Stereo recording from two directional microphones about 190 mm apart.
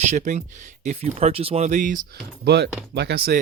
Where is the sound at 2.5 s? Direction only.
60° right (ahead or behind).